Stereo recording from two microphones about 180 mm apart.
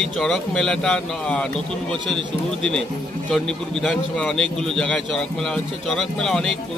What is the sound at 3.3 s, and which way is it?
A man's voice, 5° left (ahead or behind).